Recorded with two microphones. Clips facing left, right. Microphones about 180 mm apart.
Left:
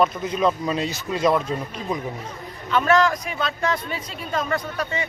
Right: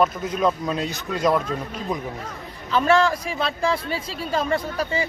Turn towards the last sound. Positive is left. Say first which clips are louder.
# right 2 dB
turn(degrees=-30)  # may be behind; listen again after turning